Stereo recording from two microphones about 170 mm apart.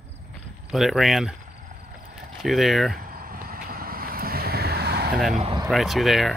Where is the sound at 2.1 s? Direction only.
Centre (ahead or behind).